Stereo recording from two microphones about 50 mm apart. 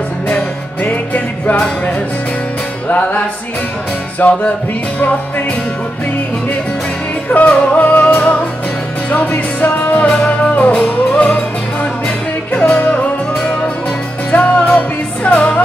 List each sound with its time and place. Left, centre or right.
0.8 s music: left
2.9 s music: left
4.2 s music: left
7.2 s music: left
9.9 s music: left
12.5 s music: left
14.3 s music: left